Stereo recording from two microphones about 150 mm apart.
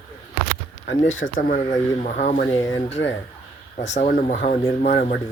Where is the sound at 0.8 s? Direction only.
65° left (ahead or behind).